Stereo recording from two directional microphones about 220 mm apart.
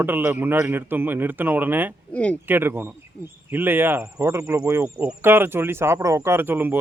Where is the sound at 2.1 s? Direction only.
5° left (ahead or behind).